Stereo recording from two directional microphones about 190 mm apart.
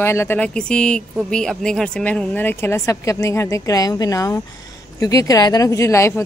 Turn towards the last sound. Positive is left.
turn(degrees=15)  # may be behind; listen again after turning